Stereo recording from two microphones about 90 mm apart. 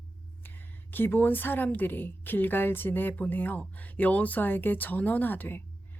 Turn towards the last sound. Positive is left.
turn(degrees=20)  # may be behind; listen again after turning